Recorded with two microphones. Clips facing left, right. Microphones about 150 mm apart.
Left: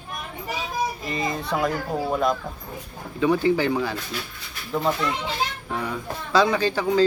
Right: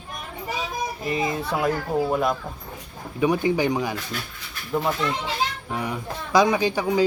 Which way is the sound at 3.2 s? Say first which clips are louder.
Left 1 dB; 15° right (ahead or behind).